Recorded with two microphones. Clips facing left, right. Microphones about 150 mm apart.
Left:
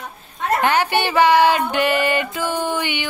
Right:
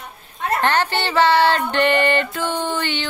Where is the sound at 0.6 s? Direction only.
10° left (ahead or behind).